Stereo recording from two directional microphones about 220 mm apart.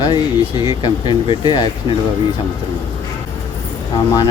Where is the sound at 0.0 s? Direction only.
20° left (ahead or behind).